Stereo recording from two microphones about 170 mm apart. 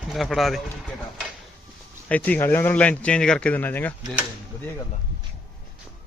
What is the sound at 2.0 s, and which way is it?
Speech, 10° left (ahead or behind).